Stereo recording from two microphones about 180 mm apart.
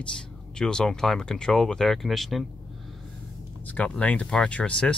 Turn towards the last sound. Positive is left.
turn(degrees=5)  # may be behind; listen again after turning